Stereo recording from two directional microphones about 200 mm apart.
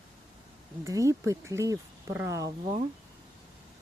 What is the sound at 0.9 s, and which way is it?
Speech, 15° right (ahead or behind).